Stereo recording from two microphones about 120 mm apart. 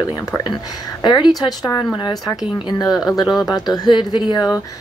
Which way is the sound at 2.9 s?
5° right (ahead or behind).